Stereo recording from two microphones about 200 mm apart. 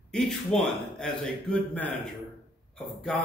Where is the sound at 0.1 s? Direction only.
5° left (ahead or behind).